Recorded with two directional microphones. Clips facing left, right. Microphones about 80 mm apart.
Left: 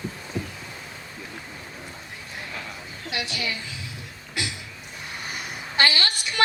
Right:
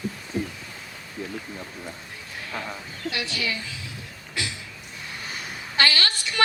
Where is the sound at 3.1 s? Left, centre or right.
Left.